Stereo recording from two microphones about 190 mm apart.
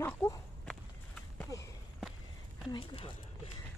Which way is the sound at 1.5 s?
15° left (ahead or behind).